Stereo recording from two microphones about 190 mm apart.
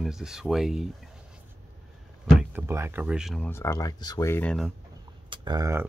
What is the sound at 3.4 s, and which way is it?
Speech, 15° left (ahead or behind).